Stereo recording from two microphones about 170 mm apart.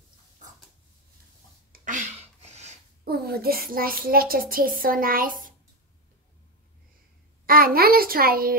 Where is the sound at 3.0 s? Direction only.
65° right (ahead or behind).